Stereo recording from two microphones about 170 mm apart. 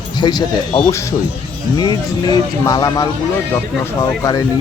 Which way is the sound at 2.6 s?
20° left (ahead or behind).